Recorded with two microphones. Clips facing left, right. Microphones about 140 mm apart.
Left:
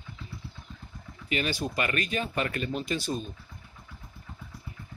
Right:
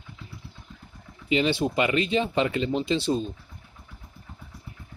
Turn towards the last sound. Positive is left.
turn(degrees=-25)  # may be behind; listen again after turning